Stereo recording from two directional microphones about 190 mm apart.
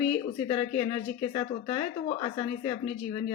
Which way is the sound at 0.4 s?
35° left (ahead or behind).